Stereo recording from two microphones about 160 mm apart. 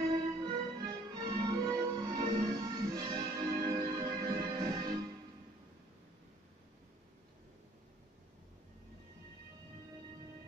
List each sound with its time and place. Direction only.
0.1 s music: 25° right (ahead or behind)